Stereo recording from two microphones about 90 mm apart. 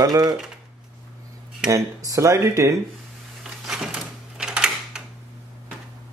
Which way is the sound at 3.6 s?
5° right (ahead or behind).